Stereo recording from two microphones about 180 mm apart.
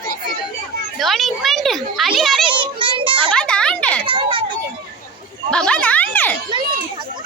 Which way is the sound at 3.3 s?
5° left (ahead or behind).